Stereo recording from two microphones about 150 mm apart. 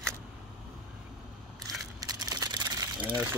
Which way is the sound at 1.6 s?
25° right (ahead or behind).